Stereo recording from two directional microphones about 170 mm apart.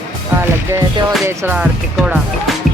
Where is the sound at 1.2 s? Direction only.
15° right (ahead or behind).